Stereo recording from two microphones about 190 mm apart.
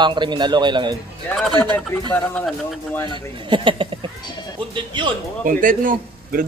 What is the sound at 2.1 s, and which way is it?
Speech, 5° left (ahead or behind).